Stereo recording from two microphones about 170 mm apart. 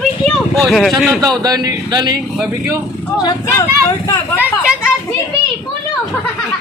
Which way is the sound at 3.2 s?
20° left (ahead or behind).